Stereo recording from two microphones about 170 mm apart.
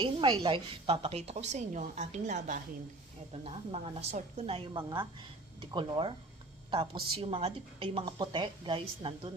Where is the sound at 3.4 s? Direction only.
35° right (ahead or behind).